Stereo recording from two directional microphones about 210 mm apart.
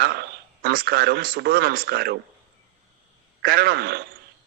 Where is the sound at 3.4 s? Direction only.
50° right (ahead or behind).